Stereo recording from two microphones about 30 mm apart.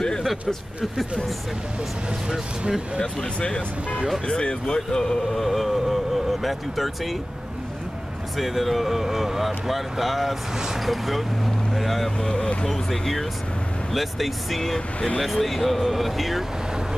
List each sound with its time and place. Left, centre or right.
3.3 s speech: left
4.6 s speech: left
5.3 s speech: centre
8.4 s speech: centre
12.2 s speech: left
12.6 s speech: centre